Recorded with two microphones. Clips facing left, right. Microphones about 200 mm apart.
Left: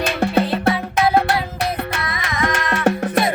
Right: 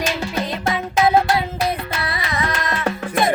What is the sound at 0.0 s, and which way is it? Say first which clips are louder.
Music: left 5 dB; 60° left (ahead or behind).